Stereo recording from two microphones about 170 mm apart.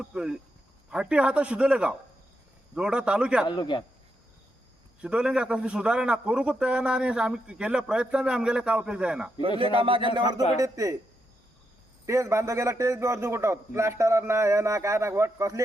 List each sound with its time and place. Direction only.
0.0 s a man's voice: 5° right (ahead or behind)
3.4 s speech: 25° left (ahead or behind)
4.9 s a man's voice: 5° right (ahead or behind)
9.7 s speech: 30° right (ahead or behind)
12.0 s a man's voice: 15° right (ahead or behind)